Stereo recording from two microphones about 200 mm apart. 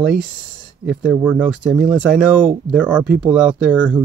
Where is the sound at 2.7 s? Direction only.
5° right (ahead or behind).